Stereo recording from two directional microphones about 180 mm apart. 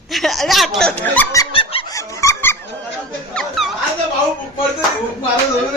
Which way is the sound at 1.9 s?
15° left (ahead or behind).